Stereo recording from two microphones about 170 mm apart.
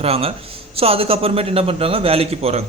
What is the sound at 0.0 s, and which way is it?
A man's voice, 35° right (ahead or behind).